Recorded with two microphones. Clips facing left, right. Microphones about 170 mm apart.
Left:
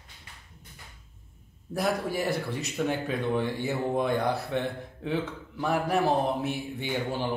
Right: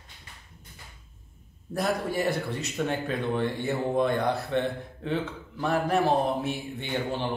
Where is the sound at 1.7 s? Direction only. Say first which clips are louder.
Right 1 dB; 5° left (ahead or behind).